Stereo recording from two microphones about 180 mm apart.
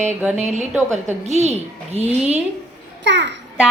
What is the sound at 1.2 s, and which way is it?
Speech, 40° right (ahead or behind).